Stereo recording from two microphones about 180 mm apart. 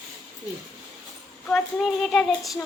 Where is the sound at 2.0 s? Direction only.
Centre (ahead or behind).